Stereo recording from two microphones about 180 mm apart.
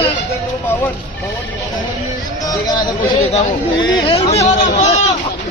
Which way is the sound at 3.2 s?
35° left (ahead or behind).